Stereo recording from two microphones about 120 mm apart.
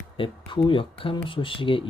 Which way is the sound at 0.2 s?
45° left (ahead or behind).